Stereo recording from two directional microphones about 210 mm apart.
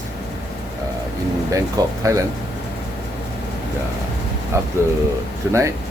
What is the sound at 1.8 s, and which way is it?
Speech, 20° right (ahead or behind).